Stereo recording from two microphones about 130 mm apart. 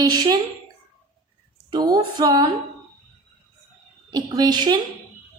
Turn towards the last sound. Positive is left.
turn(degrees=-35)  # may be behind; listen again after turning